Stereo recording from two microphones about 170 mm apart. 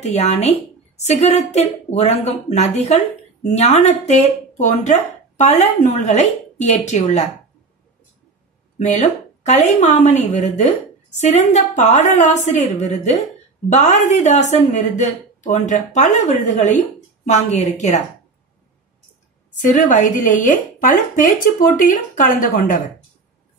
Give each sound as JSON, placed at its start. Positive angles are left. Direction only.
{"t": 0.0, "sound": "a woman's voice", "side_deg": 40}
{"t": 8.7, "sound": "a woman's voice", "side_deg": 40}
{"t": 19.6, "sound": "a woman's voice", "side_deg": 50}